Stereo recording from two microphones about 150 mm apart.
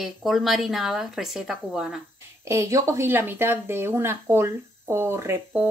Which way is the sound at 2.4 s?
20° right (ahead or behind).